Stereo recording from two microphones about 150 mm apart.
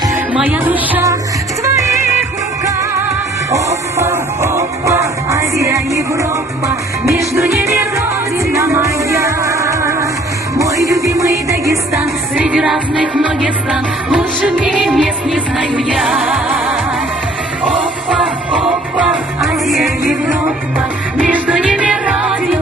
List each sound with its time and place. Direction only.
0.3 s music: 10° right (ahead or behind)
3.5 s music: 20° right (ahead or behind)
12.5 s music: 5° right (ahead or behind)
18.6 s music: 5° right (ahead or behind)